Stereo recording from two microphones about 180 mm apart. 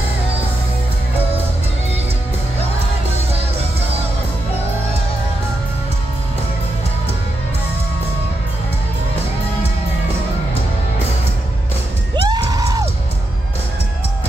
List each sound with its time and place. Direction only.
12.2 s music: 25° right (ahead or behind)